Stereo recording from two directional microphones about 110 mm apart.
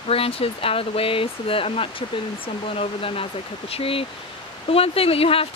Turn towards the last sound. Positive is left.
turn(degrees=60)  # may be behind; listen again after turning